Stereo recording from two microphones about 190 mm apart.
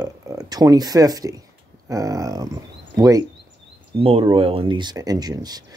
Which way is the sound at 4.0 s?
30° right (ahead or behind).